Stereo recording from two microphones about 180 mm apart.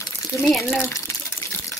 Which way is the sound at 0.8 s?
15° left (ahead or behind).